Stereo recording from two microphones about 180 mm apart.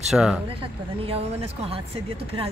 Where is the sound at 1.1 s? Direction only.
35° right (ahead or behind).